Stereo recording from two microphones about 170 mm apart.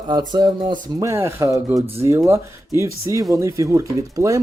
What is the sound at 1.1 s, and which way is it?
Speech, 15° right (ahead or behind).